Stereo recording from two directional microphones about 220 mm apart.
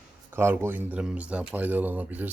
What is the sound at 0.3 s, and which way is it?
Speech, 10° right (ahead or behind).